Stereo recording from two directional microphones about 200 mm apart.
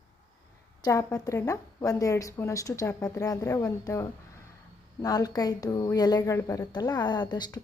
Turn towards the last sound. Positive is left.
turn(degrees=20)  # may be behind; listen again after turning